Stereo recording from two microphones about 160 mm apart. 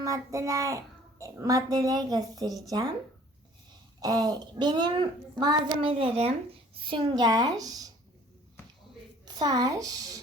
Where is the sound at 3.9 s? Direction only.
25° right (ahead or behind).